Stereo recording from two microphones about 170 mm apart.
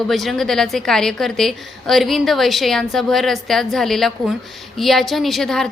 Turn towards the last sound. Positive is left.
turn(degrees=5)  # may be behind; listen again after turning